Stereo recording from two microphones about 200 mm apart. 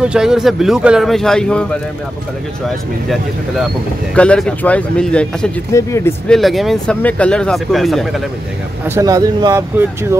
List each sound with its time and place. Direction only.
0.0 s speech: 5° right (ahead or behind)
4.1 s speech: 5° left (ahead or behind)
6.3 s speech: centre (ahead or behind)
8.8 s speech: 15° right (ahead or behind)